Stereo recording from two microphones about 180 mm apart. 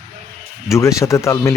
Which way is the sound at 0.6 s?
15° left (ahead or behind).